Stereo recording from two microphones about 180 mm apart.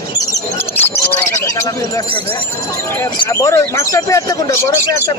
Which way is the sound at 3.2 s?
15° left (ahead or behind).